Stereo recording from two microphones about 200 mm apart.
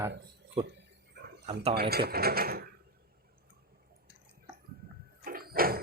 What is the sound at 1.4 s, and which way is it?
Speech, 30° right (ahead or behind).